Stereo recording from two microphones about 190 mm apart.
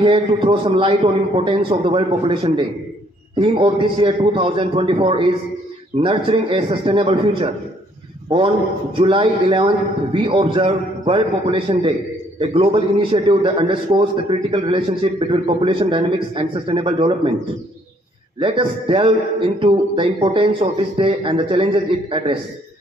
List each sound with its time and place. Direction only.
0.0 s a man's voice: 30° right (ahead or behind)
8.9 s a man's voice: 25° right (ahead or behind)
18.4 s a man's voice: 25° right (ahead or behind)